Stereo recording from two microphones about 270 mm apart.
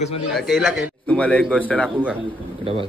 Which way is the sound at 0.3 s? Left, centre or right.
Centre.